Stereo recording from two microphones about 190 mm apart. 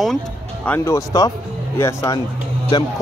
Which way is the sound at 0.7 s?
15° left (ahead or behind).